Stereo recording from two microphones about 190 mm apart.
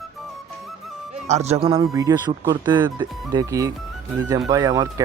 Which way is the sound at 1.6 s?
20° right (ahead or behind).